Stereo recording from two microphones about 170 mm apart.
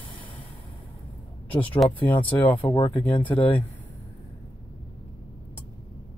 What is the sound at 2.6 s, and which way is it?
Speech, 30° left (ahead or behind).